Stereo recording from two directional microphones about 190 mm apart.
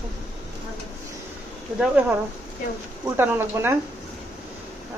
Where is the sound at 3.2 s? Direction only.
10° right (ahead or behind).